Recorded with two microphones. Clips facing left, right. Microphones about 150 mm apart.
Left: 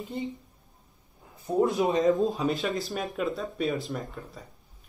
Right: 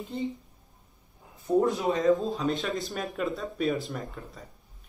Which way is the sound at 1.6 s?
20° left (ahead or behind).